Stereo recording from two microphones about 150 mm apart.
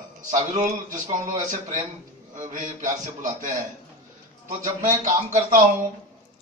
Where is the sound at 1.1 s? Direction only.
55° right (ahead or behind).